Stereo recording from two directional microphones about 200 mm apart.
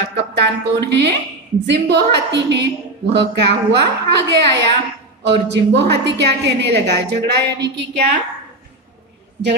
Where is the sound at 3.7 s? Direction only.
60° right (ahead or behind).